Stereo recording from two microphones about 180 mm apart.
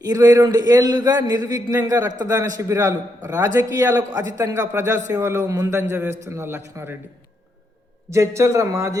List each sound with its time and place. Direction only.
0.0 s a man's voice: 20° right (ahead or behind)
8.1 s a man's voice: 15° right (ahead or behind)